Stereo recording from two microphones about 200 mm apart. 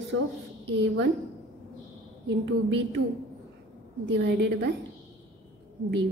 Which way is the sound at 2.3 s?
65° right (ahead or behind).